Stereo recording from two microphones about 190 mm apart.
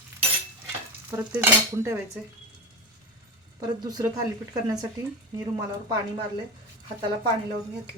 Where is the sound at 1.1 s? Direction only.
15° right (ahead or behind).